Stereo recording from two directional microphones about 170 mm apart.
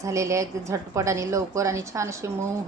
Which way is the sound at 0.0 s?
20° right (ahead or behind).